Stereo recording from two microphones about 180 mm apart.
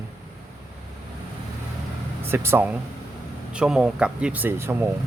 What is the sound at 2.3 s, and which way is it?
Speech, 15° right (ahead or behind).